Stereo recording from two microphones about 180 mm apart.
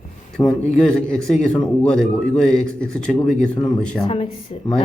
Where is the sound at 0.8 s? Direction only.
5° left (ahead or behind).